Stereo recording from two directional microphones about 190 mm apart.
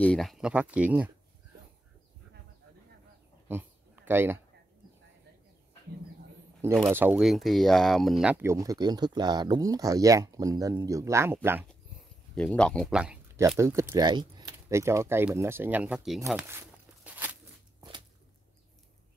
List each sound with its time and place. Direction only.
0.0 s speech: 5° left (ahead or behind)
3.4 s a sound: 10° right (ahead or behind)
6.9 s speech: 10° right (ahead or behind)
12.4 s speech: 5° left (ahead or behind)
16.3 s walk: 10° right (ahead or behind)